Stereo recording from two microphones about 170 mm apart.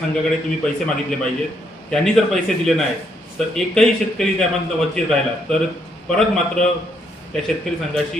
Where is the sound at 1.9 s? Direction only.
5° left (ahead or behind).